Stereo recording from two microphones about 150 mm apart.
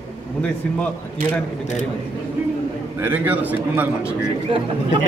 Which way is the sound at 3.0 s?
10° right (ahead or behind).